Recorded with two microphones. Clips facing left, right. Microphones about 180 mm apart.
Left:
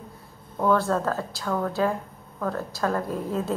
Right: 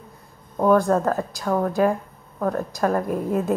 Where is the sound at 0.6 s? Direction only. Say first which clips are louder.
Right 5 dB; 15° right (ahead or behind).